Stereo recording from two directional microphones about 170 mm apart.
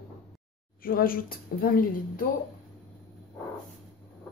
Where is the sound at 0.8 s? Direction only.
60° left (ahead or behind).